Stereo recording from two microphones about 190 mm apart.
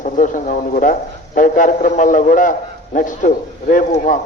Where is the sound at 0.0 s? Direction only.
45° left (ahead or behind).